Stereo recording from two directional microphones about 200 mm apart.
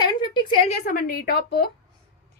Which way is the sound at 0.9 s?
45° left (ahead or behind).